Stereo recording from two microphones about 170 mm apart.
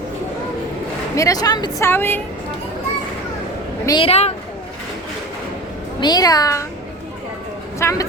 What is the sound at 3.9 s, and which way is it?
Speech, 30° left (ahead or behind).